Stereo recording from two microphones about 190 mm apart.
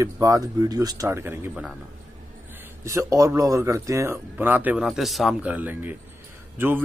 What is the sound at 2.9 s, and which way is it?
A man's voice, 15° right (ahead or behind).